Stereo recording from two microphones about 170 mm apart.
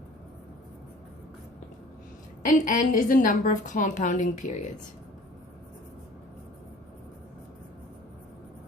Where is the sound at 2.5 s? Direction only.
50° left (ahead or behind).